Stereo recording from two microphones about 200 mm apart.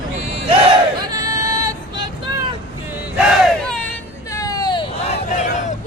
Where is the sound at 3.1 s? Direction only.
5° right (ahead or behind); by 5.2 s 25° left (ahead or behind).